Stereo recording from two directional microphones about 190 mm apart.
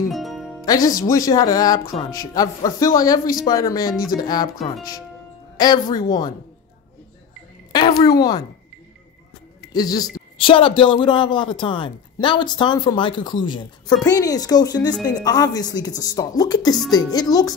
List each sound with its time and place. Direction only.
0.1 s music: centre (ahead or behind)
0.7 s a man's voice: 20° left (ahead or behind)
7.7 s a sound: 20° left (ahead or behind)
8.2 s a man's voice: 20° left (ahead or behind)
9.7 s a man's voice: 20° left (ahead or behind)